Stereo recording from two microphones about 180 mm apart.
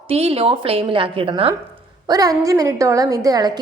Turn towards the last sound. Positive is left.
turn(degrees=-20)  # may be behind; listen again after turning